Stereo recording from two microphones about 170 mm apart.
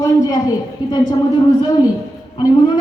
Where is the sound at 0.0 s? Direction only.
20° left (ahead or behind).